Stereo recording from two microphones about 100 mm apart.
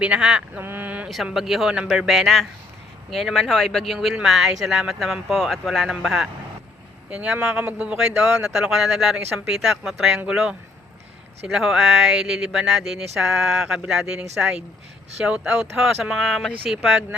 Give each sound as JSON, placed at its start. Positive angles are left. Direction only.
{"t": 0.0, "sound": "speech", "side_deg": -10}
{"t": 0.6, "sound": "a sound", "side_deg": -20}
{"t": 1.1, "sound": "speech", "side_deg": 0}